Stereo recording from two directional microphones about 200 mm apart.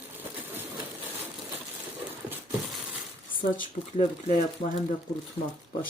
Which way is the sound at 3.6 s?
40° left (ahead or behind).